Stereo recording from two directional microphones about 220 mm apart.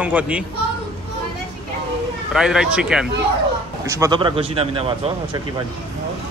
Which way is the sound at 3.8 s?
15° right (ahead or behind).